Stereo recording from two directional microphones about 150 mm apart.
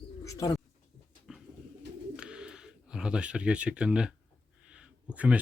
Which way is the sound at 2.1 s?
5° right (ahead or behind).